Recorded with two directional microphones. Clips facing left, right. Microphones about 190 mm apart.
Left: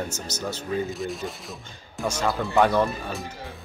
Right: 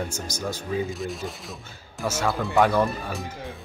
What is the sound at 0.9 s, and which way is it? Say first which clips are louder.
Speech: left 1 dB; centre (ahead or behind).